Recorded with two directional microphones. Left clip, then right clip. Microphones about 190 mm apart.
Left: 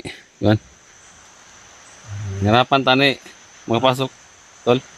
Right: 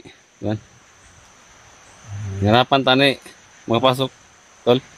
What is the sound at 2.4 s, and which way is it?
Speech, 5° right (ahead or behind).